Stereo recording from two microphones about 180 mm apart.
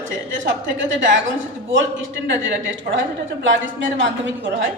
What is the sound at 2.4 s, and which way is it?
Speech, 90° right.